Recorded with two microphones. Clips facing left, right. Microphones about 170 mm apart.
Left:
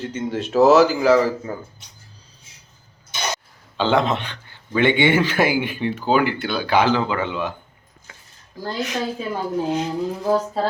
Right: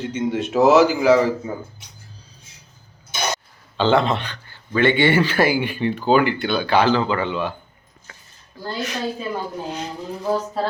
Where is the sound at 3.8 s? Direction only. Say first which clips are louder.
Right 1 dB; 10° left (ahead or behind).